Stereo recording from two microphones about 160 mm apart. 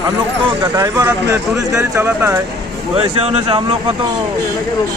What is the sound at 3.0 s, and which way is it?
Speech, 35° right (ahead or behind).